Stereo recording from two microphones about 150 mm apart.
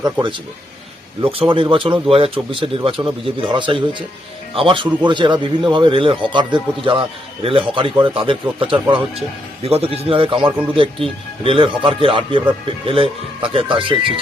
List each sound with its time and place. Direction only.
0.0 s speech: 30° right (ahead or behind)